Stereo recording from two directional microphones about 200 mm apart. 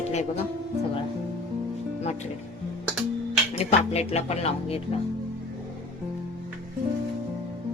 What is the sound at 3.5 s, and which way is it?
Speech, 35° left (ahead or behind).